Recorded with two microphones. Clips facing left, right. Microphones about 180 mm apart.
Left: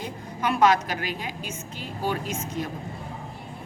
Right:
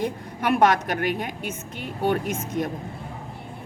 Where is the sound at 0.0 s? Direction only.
60° right (ahead or behind).